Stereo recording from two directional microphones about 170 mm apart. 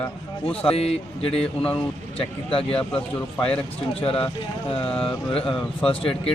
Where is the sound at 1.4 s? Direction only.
5° left (ahead or behind).